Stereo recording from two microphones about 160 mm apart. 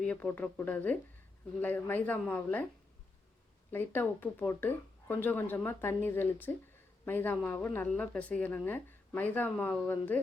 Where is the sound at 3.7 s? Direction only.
10° left (ahead or behind).